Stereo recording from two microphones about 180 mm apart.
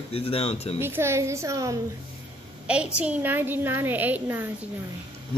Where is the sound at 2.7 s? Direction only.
5° right (ahead or behind).